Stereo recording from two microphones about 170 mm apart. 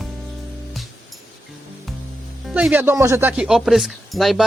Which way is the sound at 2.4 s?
5° right (ahead or behind).